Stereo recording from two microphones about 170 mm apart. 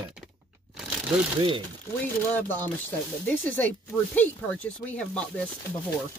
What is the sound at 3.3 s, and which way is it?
Speech, 10° left (ahead or behind).